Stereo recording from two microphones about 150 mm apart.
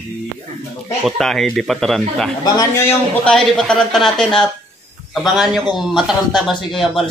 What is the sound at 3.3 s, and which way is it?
A man's voice, 5° left (ahead or behind).